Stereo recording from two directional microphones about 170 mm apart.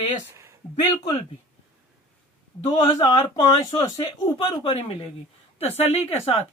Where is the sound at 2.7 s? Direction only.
25° left (ahead or behind).